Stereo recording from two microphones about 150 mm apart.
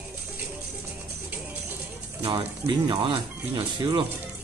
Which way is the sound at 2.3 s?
35° right (ahead or behind).